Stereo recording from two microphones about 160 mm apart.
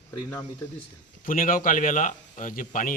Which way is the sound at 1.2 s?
60° left (ahead or behind).